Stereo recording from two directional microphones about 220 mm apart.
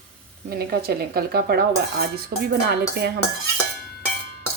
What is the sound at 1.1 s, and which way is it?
Dishes, 45° right (ahead or behind).